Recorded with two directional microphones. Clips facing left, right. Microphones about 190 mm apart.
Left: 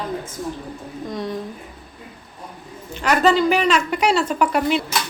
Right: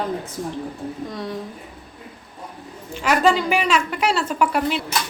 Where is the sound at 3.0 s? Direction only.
5° right (ahead or behind).